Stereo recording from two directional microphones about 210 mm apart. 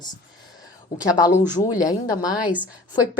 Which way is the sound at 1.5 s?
15° left (ahead or behind).